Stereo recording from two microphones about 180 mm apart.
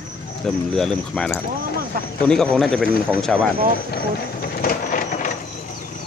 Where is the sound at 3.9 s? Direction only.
55° left (ahead or behind).